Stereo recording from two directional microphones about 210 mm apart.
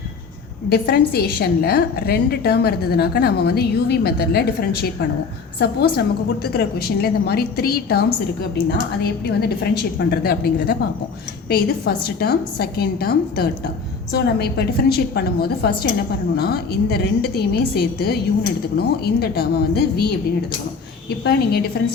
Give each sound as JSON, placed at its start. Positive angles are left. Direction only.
{"t": 0.7, "sound": "a woman's voice", "side_deg": 45}